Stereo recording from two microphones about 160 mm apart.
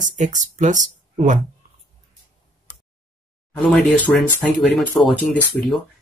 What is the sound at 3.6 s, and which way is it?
Speech, 5° left (ahead or behind).